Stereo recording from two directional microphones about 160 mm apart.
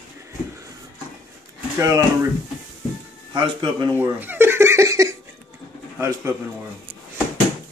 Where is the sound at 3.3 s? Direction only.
30° right (ahead or behind).